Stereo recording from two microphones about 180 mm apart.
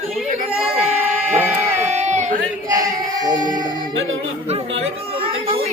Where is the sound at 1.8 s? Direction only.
40° right (ahead or behind).